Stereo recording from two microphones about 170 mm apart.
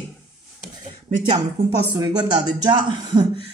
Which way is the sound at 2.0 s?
25° right (ahead or behind).